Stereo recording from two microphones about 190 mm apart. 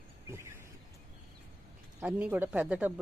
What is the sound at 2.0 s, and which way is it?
Speech, 5° right (ahead or behind).